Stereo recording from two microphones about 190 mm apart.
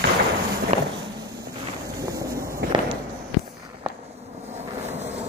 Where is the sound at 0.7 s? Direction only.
35° right (ahead or behind).